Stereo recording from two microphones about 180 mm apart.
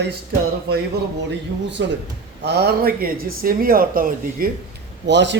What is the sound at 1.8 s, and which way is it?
Speech, 80° right.